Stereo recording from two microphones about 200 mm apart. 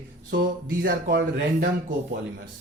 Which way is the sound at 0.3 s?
60° right (ahead or behind).